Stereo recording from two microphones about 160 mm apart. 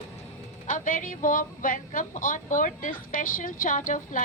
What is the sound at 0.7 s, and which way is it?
A woman's voice, 55° left (ahead or behind).